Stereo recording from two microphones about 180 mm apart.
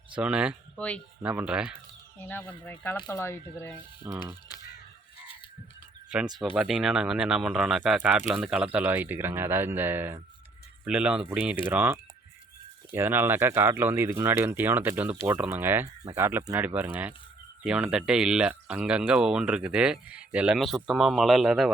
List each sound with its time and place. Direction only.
0.2 s speech: 5° right (ahead or behind)
0.8 s speech: 5° left (ahead or behind)
1.2 s speech: 5° right (ahead or behind)
2.1 s speech: 10° left (ahead or behind)
4.0 s speech: 10° right (ahead or behind)
6.1 s speech: 5° right (ahead or behind)